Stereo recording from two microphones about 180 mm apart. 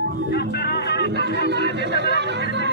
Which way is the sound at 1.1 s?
70° right (ahead or behind).